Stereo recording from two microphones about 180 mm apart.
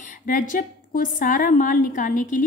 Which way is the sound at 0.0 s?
45° left (ahead or behind).